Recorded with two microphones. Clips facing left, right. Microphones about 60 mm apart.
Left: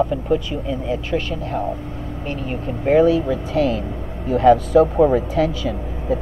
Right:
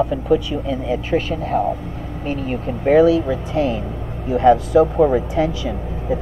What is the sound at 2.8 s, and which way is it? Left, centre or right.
Speech, right.